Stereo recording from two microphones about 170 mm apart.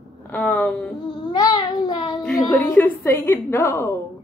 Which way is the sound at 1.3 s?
25° left (ahead or behind).